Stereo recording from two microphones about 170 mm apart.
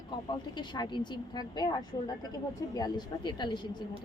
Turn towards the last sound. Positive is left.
turn(degrees=25)  # may be behind; listen again after turning